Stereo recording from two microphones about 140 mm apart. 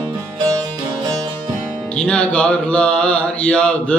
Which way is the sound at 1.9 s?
5° left (ahead or behind).